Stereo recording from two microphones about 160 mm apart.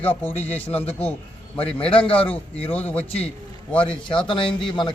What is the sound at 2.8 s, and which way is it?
Speech, 40° left (ahead or behind).